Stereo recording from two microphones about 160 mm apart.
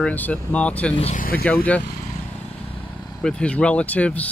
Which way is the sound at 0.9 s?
40° left (ahead or behind).